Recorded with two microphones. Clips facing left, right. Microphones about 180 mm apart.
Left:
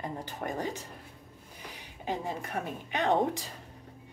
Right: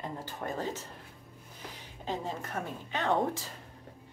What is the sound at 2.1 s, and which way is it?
Speech, 15° left (ahead or behind).